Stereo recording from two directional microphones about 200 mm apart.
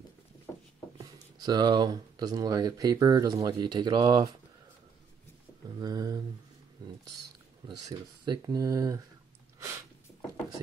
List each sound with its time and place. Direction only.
1.4 s speech: 20° right (ahead or behind)
5.8 s a sound: 20° right (ahead or behind)
8.3 s speech: 20° right (ahead or behind)